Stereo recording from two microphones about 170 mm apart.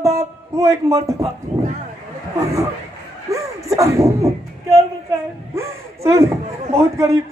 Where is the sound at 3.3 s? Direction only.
20° right (ahead or behind).